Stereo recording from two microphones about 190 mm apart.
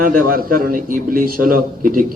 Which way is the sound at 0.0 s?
50° right (ahead or behind).